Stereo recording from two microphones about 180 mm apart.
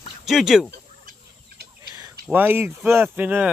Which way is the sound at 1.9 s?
20° right (ahead or behind).